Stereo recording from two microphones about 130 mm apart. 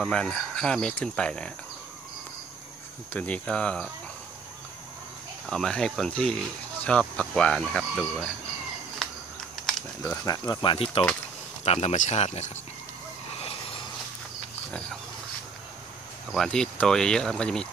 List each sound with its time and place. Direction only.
0.0 s speech: 5° left (ahead or behind)
3.1 s speech: 10° left (ahead or behind)
5.5 s speech: 5° left (ahead or behind)
10.2 s speech: 30° left (ahead or behind)
11.6 s speech: 55° left (ahead or behind)
13.4 s a sound: 45° left (ahead or behind)
16.3 s speech: 5° left (ahead or behind)